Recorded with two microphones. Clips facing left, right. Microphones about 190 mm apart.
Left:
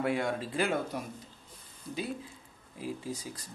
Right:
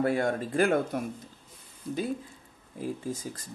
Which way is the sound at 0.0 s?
45° right (ahead or behind).